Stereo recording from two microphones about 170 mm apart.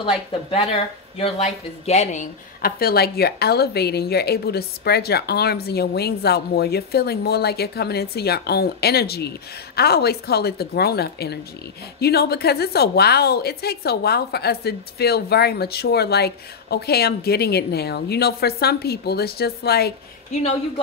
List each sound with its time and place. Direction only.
0.3 s speech: 35° left (ahead or behind)
2.6 s a woman's voice: 65° left (ahead or behind)